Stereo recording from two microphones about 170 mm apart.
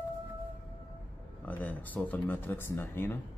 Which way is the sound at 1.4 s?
10° left (ahead or behind).